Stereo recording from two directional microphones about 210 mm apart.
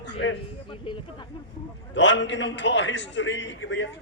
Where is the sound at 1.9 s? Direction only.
60° left (ahead or behind).